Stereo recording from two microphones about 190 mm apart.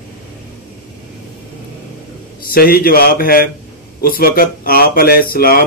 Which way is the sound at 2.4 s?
50° left (ahead or behind).